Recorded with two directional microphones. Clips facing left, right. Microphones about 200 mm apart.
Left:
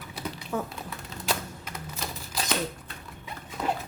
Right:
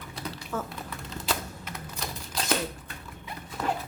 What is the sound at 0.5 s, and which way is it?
Speech, 15° left (ahead or behind).